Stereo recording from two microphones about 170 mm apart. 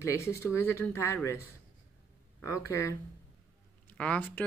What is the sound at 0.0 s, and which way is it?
Speech, 15° left (ahead or behind).